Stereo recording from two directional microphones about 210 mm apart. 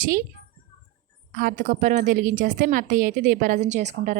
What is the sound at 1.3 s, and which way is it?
A woman's voice, 40° right (ahead or behind).